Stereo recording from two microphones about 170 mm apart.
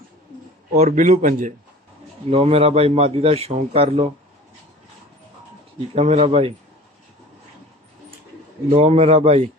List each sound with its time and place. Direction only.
0.7 s speech: 50° right (ahead or behind)
2.3 s a man's voice: 35° right (ahead or behind)
5.9 s a man's voice: 35° right (ahead or behind)
8.7 s a man's voice: 35° right (ahead or behind)